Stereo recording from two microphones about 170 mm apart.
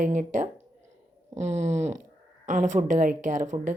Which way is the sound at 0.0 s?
45° right (ahead or behind).